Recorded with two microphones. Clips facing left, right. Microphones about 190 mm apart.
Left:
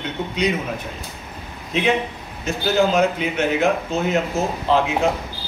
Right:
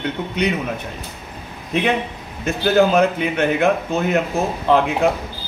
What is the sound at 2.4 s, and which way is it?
A man's voice, 55° right (ahead or behind).